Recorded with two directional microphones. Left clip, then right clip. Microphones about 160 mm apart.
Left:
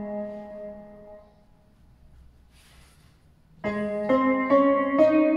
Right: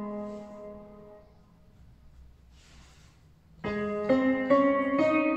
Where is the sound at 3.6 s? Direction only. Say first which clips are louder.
Left 3 dB; 45° left (ahead or behind).